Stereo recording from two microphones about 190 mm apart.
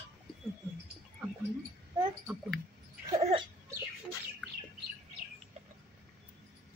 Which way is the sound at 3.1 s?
30° right (ahead or behind).